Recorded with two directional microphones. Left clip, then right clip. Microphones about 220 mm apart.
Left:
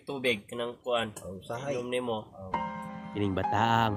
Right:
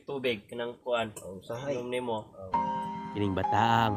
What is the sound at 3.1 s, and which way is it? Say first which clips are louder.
Speech: even; centre (ahead or behind).